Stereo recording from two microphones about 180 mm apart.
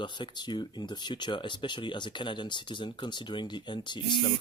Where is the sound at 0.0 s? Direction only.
25° left (ahead or behind).